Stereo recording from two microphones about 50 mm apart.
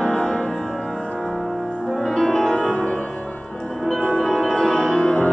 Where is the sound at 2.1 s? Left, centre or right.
Centre.